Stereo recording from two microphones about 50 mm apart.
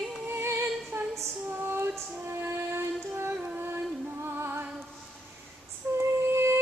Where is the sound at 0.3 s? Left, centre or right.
Right.